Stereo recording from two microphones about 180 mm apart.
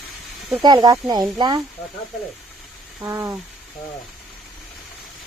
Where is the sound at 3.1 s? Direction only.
15° right (ahead or behind).